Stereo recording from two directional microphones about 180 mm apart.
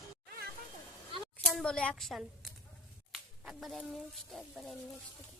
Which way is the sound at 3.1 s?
Centre (ahead or behind).